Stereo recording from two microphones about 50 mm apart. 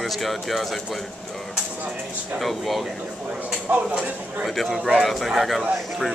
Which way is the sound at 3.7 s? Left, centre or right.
Right.